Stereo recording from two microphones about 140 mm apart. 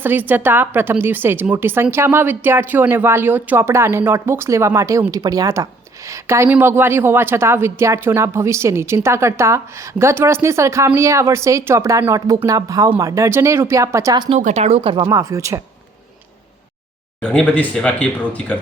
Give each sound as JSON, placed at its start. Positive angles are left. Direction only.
{"t": 0.0, "sound": "a woman's voice", "side_deg": -15}
{"t": 14.3, "sound": "speech", "side_deg": -55}
{"t": 15.0, "sound": "speech", "side_deg": -25}
{"t": 17.2, "sound": "speech", "side_deg": 10}